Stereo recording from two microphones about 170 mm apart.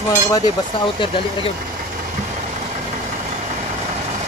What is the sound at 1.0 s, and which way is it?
Speech, 30° left (ahead or behind).